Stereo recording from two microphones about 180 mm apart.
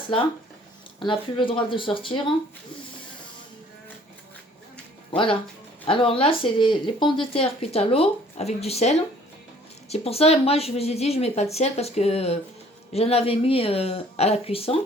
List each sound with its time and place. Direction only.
0.9 s speech: 30° left (ahead or behind)
5.1 s speech: 30° left (ahead or behind)